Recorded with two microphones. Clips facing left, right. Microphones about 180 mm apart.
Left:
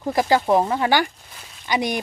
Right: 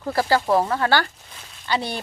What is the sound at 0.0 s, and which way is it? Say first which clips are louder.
Speech: left 2 dB; 15° left (ahead or behind).